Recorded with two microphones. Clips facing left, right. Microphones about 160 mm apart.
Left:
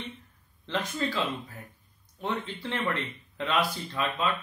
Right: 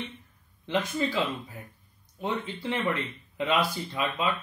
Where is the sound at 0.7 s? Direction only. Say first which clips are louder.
Right 3 dB; 15° right (ahead or behind).